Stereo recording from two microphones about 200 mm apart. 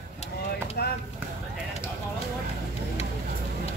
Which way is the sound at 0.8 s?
50° left (ahead or behind).